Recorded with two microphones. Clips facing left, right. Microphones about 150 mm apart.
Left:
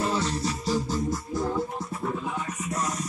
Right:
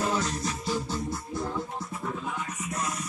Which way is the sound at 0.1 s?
30° left (ahead or behind).